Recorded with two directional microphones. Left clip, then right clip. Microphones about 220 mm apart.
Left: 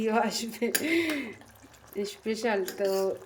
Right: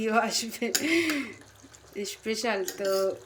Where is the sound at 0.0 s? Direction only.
5° left (ahead or behind).